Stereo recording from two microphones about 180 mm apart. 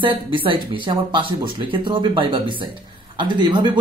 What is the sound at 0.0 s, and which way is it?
Speech, 30° right (ahead or behind).